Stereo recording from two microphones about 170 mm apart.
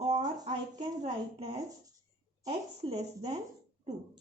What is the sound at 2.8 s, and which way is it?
Speech, 40° right (ahead or behind).